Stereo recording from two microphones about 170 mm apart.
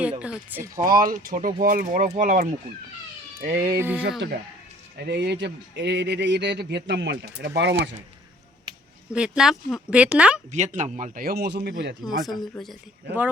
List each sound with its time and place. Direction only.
0.2 s speech: 10° right (ahead or behind)
0.8 s speech: 55° right (ahead or behind)
3.4 s speech: 70° right (ahead or behind)
3.8 s speech: 10° right (ahead or behind)
4.9 s speech: 75° right (ahead or behind)
9.1 s speech: 5° right (ahead or behind)
10.5 s speech: 45° right (ahead or behind); by 11.9 s 80° right
12.0 s speech: centre (ahead or behind)